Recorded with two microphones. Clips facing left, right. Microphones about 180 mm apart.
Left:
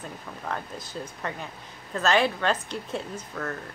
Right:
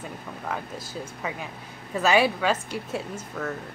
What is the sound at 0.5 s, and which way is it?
A woman's voice, 5° right (ahead or behind).